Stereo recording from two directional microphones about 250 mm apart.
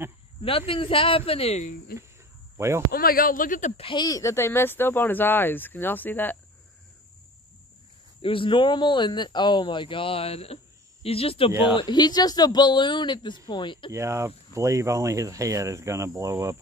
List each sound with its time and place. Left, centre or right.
0.4 s speech: left
2.5 s speech: centre
2.9 s speech: left; by 6.3 s centre
8.2 s speech: left
13.9 s speech: centre